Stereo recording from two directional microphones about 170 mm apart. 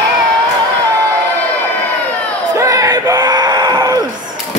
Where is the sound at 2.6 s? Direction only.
20° right (ahead or behind).